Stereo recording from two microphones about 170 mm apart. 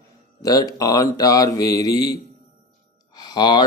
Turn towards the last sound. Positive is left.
turn(degrees=25)  # may be behind; listen again after turning